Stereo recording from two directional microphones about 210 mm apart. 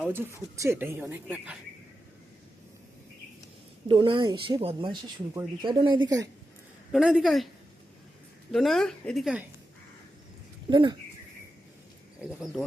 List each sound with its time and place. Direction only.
0.0 s speech: 10° right (ahead or behind)
3.8 s speech: 25° right (ahead or behind)
6.9 s a woman's voice: centre (ahead or behind)
8.5 s a woman's voice: centre (ahead or behind)
10.7 s speech: 20° right (ahead or behind)
12.2 s a woman's voice: 5° right (ahead or behind)